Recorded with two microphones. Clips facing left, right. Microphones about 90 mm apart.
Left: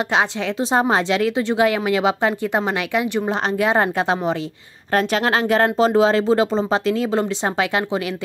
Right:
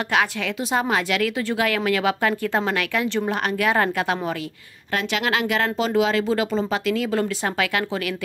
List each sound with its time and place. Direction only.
0.7 s speech: 30° left (ahead or behind)
4.9 s speech: 35° left (ahead or behind)